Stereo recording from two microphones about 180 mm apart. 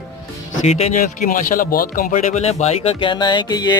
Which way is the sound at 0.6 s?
35° left (ahead or behind).